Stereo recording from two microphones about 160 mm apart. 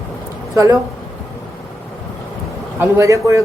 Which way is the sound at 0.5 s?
20° right (ahead or behind).